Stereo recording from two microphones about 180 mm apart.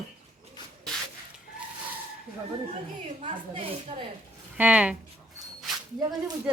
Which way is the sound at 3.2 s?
30° right (ahead or behind).